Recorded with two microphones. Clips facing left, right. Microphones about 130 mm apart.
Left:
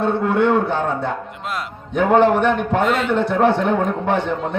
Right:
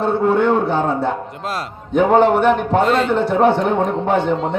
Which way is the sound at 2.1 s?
30° right (ahead or behind).